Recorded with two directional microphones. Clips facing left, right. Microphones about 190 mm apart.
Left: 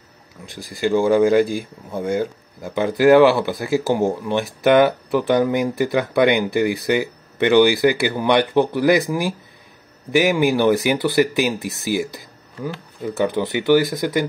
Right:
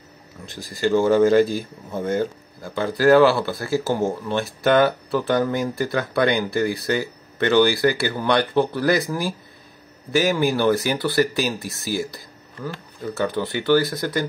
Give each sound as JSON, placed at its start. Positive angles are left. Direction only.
{"t": 0.5, "sound": "speech", "side_deg": 15}